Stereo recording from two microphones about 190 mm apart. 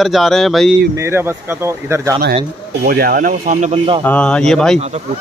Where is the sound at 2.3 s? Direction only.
50° right (ahead or behind); by 4.0 s 30° right (ahead or behind).